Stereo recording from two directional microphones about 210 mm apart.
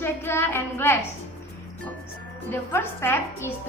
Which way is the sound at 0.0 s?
10° left (ahead or behind).